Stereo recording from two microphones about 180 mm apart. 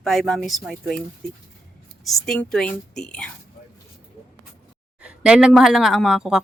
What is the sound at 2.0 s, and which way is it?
Speech, 5° left (ahead or behind).